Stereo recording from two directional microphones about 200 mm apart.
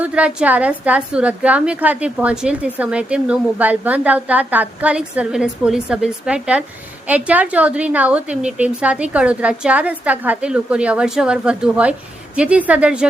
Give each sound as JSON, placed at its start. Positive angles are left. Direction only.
{"t": 0.0, "sound": "a woman's voice", "side_deg": -5}